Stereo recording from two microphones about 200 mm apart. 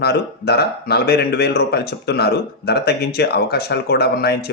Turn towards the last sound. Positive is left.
turn(degrees=50)  # may be behind; listen again after turning